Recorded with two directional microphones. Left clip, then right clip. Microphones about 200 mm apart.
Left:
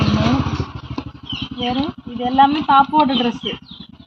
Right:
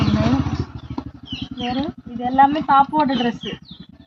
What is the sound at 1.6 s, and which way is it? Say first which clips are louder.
Speech: left 3 dB; 5° right (ahead or behind).